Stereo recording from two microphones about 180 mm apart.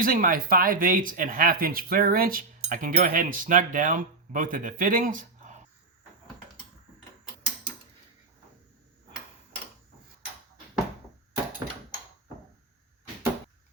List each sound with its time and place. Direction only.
0.0 s speech: 50° right (ahead or behind)